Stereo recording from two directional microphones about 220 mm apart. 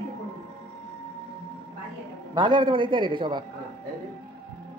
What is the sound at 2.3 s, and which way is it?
A man's voice, 20° right (ahead or behind).